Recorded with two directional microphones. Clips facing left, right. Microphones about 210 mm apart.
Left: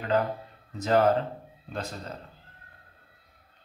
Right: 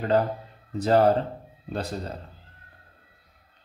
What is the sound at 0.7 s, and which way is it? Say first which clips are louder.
Speech: right 3 dB; 35° right (ahead or behind).